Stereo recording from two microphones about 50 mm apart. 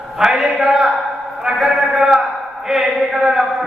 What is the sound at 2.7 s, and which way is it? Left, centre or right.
Speech, centre.